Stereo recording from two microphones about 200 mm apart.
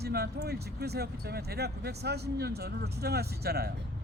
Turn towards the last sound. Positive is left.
turn(degrees=-50)  # may be behind; listen again after turning